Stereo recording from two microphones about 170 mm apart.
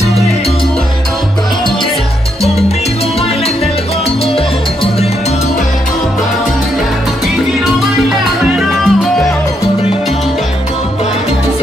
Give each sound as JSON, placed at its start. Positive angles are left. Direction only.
{"t": 8.1, "sound": "music", "side_deg": 0}